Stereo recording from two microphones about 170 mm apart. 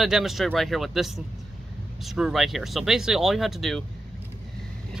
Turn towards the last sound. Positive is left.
turn(degrees=0)  # may be behind; listen again after turning